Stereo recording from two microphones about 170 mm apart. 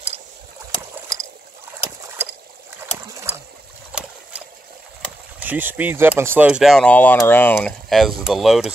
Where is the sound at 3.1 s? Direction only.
20° right (ahead or behind).